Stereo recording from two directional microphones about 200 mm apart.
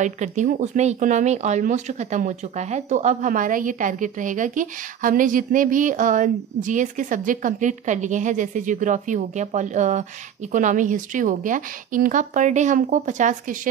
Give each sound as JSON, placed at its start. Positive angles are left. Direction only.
{"t": 0.0, "sound": "speech", "side_deg": -40}